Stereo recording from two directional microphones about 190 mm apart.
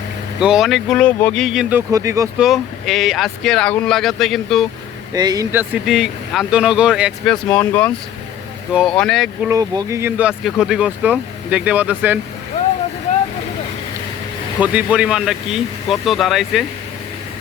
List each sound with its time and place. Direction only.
0.3 s speech: 5° right (ahead or behind)
1.9 s speech: 15° right (ahead or behind)
2.4 s speech: centre (ahead or behind)
5.1 s speech: 20° right (ahead or behind); by 7.3 s 5° right (ahead or behind)
7.5 s speech: 10° left (ahead or behind)
9.5 s speech: 15° right (ahead or behind)
14.6 s speech: 5° right (ahead or behind)